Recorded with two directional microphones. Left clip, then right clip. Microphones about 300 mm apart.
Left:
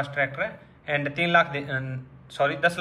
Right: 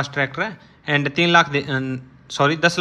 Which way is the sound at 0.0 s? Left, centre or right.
Centre.